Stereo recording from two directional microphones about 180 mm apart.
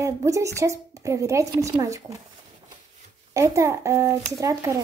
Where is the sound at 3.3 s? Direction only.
15° right (ahead or behind).